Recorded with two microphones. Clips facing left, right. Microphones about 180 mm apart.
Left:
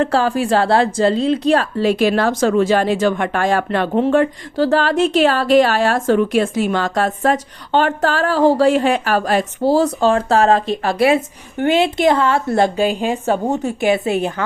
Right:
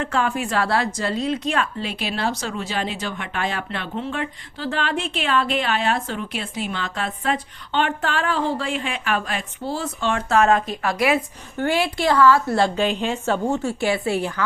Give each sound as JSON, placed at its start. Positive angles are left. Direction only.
{"t": 0.0, "sound": "a woman's voice", "side_deg": 35}